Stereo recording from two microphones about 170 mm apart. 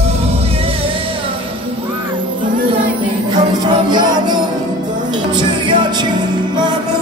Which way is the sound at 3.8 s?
25° right (ahead or behind).